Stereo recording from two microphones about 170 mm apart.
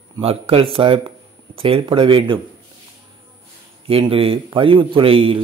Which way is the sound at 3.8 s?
30° right (ahead or behind).